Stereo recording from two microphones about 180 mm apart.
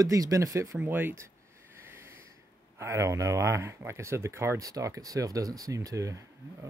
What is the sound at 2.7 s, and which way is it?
Speech, 15° right (ahead or behind).